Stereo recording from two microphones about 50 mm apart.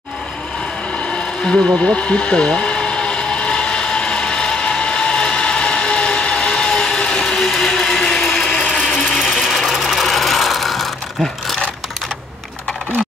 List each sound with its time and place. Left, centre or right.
1.1 s a sound: left
9.2 s sewing machine: centre
9.5 s ratchet: centre